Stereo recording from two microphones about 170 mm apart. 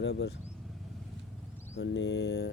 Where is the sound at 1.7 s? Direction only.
90° left.